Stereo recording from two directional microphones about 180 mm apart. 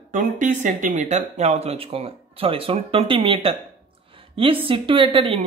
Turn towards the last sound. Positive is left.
turn(degrees=-30)  # may be behind; listen again after turning